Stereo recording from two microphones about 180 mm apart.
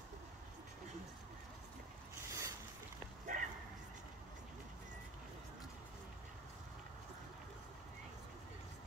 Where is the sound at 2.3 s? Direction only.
15° right (ahead or behind).